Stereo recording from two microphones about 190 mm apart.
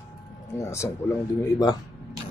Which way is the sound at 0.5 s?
15° left (ahead or behind).